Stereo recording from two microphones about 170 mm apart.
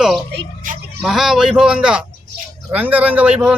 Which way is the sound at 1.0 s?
Centre (ahead or behind).